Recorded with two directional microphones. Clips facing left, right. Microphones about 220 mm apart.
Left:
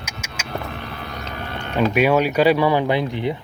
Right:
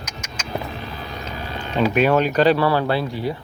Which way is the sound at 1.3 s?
60° left (ahead or behind).